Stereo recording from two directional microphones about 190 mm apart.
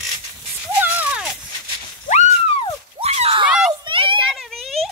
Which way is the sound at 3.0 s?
35° right (ahead or behind).